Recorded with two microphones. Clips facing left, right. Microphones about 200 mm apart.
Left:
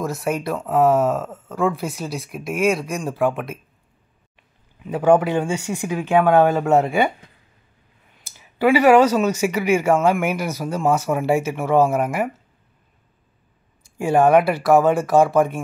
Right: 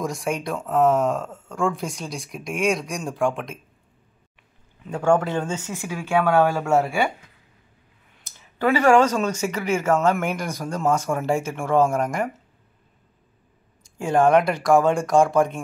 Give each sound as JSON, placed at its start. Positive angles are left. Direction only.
{"t": 0.0, "sound": "speech", "side_deg": 5}
{"t": 4.8, "sound": "speech", "side_deg": 10}
{"t": 8.3, "sound": "speech", "side_deg": 10}
{"t": 13.9, "sound": "speech", "side_deg": 10}